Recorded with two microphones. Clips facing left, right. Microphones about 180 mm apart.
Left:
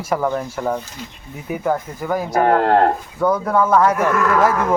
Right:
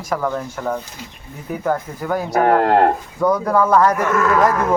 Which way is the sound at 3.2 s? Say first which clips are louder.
Right 1 dB; centre (ahead or behind).